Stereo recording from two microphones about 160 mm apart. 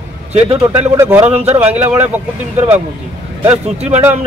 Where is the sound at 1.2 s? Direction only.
40° right (ahead or behind).